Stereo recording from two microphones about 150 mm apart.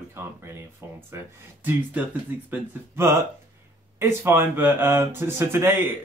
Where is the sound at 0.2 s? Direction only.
20° right (ahead or behind).